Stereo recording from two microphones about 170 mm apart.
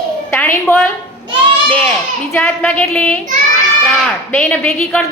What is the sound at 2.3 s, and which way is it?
Speech, 10° left (ahead or behind).